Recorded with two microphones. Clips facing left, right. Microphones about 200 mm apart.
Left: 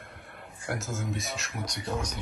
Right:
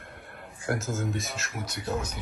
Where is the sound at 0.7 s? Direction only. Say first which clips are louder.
Right 4 dB; centre (ahead or behind).